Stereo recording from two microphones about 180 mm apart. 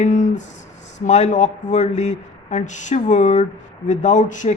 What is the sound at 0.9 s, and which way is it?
Speech, 40° left (ahead or behind).